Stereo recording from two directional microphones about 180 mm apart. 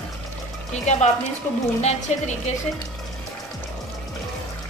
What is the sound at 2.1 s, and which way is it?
Speech, 35° left (ahead or behind).